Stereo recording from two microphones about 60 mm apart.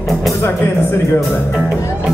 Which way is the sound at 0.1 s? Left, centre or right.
Centre.